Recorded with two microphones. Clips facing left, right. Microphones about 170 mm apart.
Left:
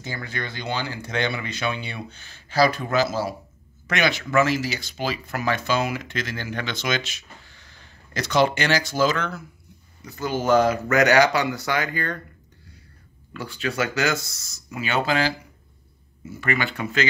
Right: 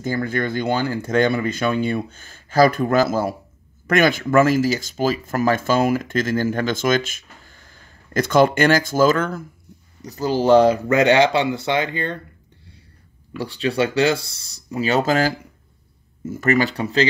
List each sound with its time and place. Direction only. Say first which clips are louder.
0.0 s speech: right 10 dB; 50° right (ahead or behind)
10.0 s speech: right 6 dB; 35° right (ahead or behind)
13.4 s speech: right 6 dB; 35° right (ahead or behind)